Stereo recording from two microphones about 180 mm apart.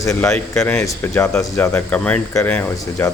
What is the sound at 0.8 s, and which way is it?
Speech, 20° left (ahead or behind).